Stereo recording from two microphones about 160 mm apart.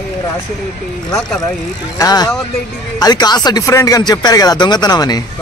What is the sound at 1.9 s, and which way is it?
Speech, 25° left (ahead or behind).